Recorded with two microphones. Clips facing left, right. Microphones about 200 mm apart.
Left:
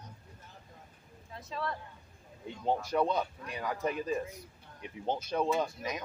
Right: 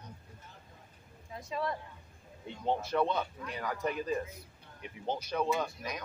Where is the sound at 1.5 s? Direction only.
15° right (ahead or behind).